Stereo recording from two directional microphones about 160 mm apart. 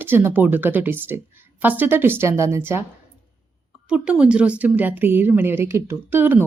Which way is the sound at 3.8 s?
5° right (ahead or behind).